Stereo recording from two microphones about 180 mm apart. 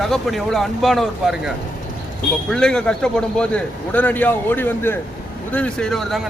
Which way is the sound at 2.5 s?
5° left (ahead or behind).